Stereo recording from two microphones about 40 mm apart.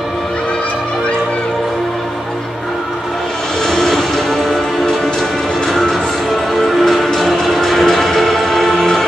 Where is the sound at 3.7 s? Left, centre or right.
Centre.